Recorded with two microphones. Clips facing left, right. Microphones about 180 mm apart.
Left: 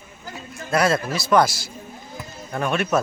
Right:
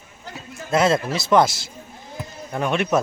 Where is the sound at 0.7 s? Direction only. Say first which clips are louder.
Right 2 dB; 20° right (ahead or behind).